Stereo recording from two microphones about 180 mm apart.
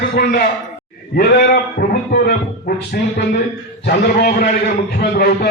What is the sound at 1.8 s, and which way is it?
Speech, 70° left (ahead or behind).